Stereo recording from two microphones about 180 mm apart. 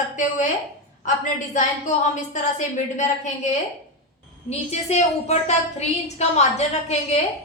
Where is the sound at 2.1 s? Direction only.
45° left (ahead or behind).